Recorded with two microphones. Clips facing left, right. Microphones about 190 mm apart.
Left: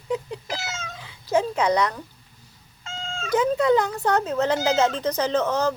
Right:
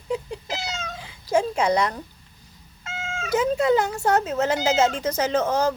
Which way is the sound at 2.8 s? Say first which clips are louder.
Right 1 dB; 5° right (ahead or behind).